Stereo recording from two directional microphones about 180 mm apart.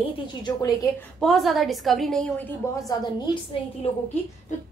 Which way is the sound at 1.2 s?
Centre (ahead or behind).